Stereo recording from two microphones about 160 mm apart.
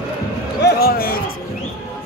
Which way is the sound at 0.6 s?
70° left (ahead or behind).